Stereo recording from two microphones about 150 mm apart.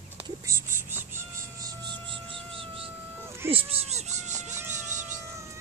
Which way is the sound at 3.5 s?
40° right (ahead or behind).